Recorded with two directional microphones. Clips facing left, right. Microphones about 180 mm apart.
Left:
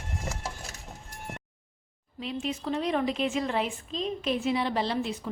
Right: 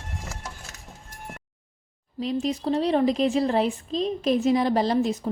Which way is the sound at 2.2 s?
40° right (ahead or behind).